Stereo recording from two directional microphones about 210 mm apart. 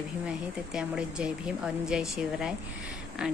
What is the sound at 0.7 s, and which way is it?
A woman's voice, 5° right (ahead or behind).